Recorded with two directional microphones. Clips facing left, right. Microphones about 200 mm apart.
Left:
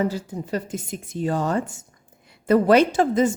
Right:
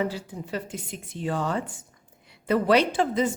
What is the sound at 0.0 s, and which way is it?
A woman's voice, 45° left (ahead or behind).